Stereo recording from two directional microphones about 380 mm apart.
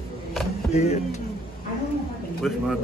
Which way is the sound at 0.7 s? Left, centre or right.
Centre.